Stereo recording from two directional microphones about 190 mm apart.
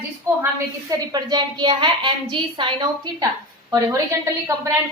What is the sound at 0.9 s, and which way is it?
A woman's voice, 20° right (ahead or behind).